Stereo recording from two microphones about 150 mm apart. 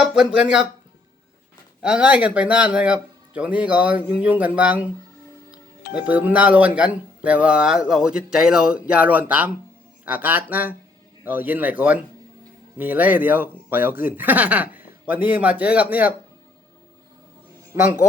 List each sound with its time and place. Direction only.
0.0 s speech: 5° right (ahead or behind)
1.8 s speech: 5° right (ahead or behind)
5.9 s speech: 10° right (ahead or behind)